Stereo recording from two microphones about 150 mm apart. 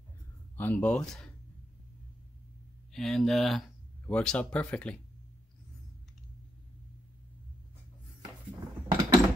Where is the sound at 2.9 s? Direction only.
Centre (ahead or behind).